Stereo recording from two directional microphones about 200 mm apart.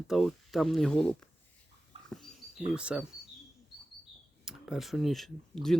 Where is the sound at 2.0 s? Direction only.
Centre (ahead or behind).